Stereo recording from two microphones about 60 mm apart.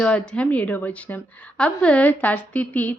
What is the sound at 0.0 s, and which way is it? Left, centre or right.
Speech, centre.